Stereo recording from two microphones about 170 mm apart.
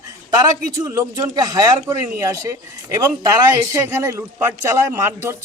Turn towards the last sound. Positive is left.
turn(degrees=-15)  # may be behind; listen again after turning